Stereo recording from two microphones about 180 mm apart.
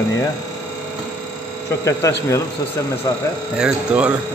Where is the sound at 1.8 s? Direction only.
15° left (ahead or behind).